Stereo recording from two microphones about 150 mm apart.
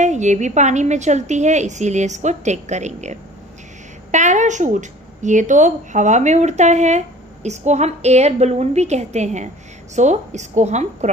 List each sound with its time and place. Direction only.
0.0 s a woman's voice: 50° right (ahead or behind)